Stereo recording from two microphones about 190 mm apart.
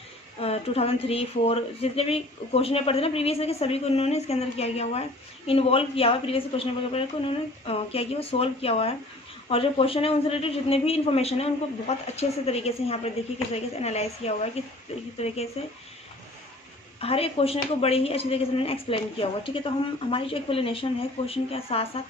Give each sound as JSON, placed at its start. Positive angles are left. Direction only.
{"t": 0.3, "sound": "a woman's voice", "side_deg": 30}
{"t": 17.0, "sound": "speech", "side_deg": 30}